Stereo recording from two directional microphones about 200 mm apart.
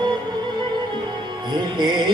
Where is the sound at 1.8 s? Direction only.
20° right (ahead or behind).